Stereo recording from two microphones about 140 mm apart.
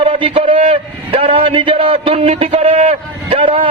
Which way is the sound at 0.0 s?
40° right (ahead or behind).